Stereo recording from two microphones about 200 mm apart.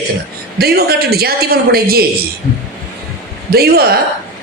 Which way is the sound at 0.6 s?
50° right (ahead or behind).